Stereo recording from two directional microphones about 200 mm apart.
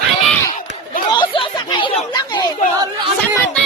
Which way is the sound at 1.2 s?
25° left (ahead or behind).